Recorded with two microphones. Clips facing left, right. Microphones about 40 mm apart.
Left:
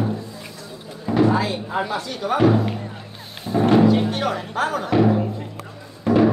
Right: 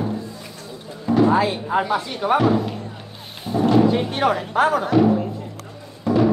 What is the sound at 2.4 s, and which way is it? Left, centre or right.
Speech, left.